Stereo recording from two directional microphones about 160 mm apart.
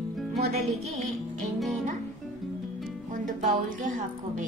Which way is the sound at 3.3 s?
55° right (ahead or behind).